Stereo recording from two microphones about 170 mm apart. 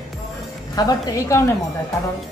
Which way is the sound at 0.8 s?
20° left (ahead or behind).